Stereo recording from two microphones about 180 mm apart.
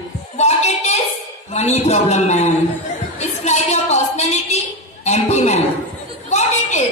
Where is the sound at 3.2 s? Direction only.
40° left (ahead or behind).